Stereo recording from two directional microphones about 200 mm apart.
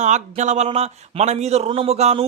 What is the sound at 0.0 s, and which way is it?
A man's voice, 35° right (ahead or behind).